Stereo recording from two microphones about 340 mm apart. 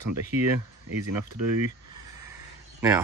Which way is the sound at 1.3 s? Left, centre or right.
Right.